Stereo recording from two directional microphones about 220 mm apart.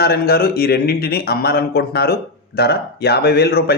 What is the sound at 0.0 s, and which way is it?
Speech, 45° left (ahead or behind).